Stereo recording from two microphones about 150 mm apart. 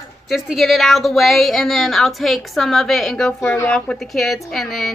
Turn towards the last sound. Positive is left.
turn(degrees=0)  # may be behind; listen again after turning